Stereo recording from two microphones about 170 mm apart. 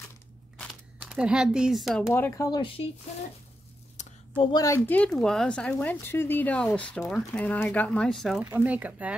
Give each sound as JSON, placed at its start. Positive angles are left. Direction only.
{"t": 0.9, "sound": "speech", "side_deg": -5}
{"t": 2.1, "sound": "speech", "side_deg": 15}
{"t": 4.4, "sound": "speech", "side_deg": 25}
{"t": 8.5, "sound": "speech", "side_deg": -10}